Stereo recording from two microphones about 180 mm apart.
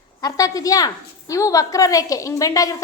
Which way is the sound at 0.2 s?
20° left (ahead or behind).